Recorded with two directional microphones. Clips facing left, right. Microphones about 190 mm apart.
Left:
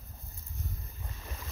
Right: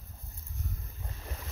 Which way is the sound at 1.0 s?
35° right (ahead or behind).